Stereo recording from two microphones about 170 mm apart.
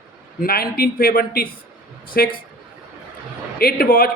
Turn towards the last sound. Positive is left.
turn(degrees=60)  # may be behind; listen again after turning